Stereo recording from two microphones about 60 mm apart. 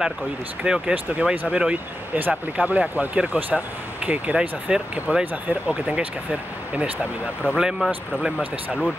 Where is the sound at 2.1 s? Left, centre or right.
Right.